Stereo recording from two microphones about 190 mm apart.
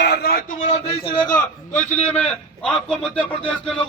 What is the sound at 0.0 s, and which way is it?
A man's voice, 60° left (ahead or behind).